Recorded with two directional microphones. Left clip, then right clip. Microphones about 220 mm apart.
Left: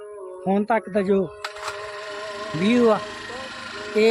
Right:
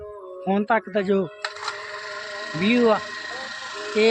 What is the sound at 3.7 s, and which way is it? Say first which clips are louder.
Vehicle: left 2 dB; 25° right (ahead or behind).